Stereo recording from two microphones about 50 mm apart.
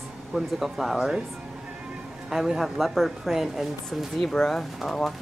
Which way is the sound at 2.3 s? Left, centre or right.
Centre.